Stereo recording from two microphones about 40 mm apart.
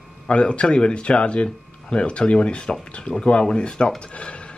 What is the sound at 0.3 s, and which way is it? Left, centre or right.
Speech, left.